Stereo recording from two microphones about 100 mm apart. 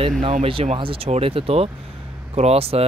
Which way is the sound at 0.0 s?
75° right (ahead or behind).